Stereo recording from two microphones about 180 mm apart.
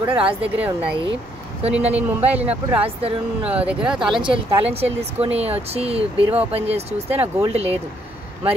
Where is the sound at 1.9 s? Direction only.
10° right (ahead or behind).